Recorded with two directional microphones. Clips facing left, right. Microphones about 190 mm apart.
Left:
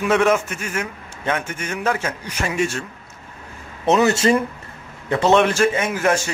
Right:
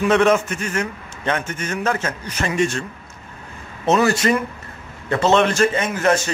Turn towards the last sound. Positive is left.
turn(degrees=10)  # may be behind; listen again after turning